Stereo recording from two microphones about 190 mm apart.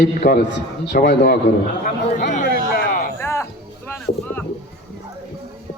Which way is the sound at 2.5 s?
55° left (ahead or behind).